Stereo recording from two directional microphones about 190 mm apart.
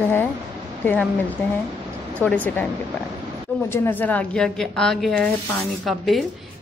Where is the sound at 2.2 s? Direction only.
5° left (ahead or behind).